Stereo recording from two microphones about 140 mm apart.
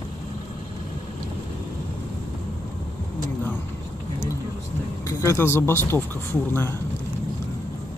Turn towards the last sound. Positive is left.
turn(degrees=15)  # may be behind; listen again after turning